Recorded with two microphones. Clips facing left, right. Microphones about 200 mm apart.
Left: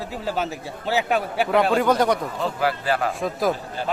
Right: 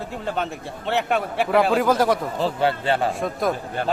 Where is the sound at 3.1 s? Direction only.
Centre (ahead or behind).